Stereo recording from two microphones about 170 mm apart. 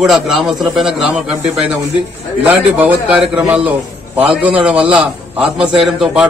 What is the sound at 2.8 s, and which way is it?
A man's voice, 10° right (ahead or behind).